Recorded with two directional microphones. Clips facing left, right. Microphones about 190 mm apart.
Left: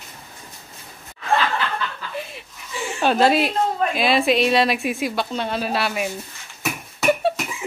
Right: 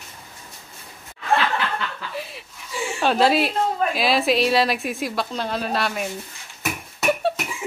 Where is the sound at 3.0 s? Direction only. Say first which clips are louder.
Left 1 dB; centre (ahead or behind).